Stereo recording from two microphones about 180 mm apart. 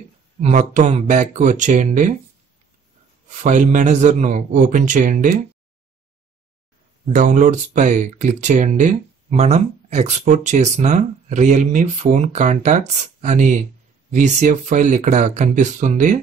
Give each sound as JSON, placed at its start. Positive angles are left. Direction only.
{"t": 0.4, "sound": "a man's voice", "side_deg": -40}
{"t": 3.3, "sound": "a man's voice", "side_deg": -40}
{"t": 7.1, "sound": "speech", "side_deg": -45}